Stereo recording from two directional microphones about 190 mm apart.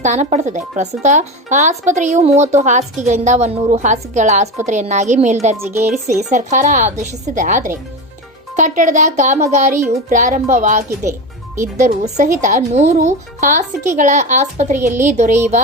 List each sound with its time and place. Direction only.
0.0 s speech: 35° right (ahead or behind)
5.5 s speech: 15° right (ahead or behind)
6.3 s speech: 40° right (ahead or behind)